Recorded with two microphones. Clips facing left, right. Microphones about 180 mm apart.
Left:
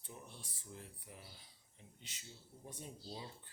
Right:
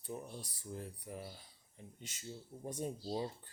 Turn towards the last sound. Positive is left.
turn(degrees=-45)  # may be behind; listen again after turning